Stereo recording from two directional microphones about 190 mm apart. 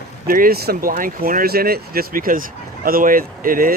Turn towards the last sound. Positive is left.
turn(degrees=-45)  # may be behind; listen again after turning